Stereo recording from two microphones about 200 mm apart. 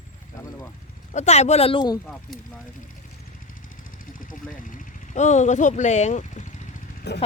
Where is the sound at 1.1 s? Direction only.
35° left (ahead or behind).